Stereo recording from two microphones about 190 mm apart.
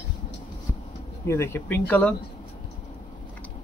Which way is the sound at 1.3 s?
15° left (ahead or behind).